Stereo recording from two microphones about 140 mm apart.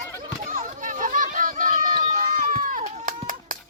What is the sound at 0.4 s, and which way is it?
Run, 65° right (ahead or behind).